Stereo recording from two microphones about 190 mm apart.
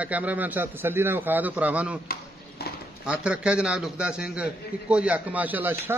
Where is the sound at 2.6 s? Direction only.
55° left (ahead or behind).